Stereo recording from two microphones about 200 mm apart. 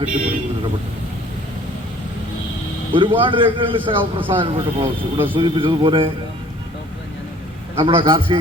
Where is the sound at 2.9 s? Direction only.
25° right (ahead or behind).